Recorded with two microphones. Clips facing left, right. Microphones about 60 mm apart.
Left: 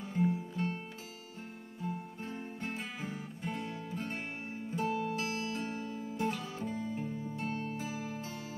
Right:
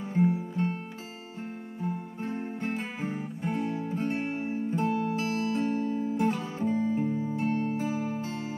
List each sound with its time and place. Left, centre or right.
0.1 s music: right
1.8 s music: right